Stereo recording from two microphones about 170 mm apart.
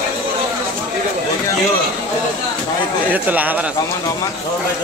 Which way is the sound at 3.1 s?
10° right (ahead or behind).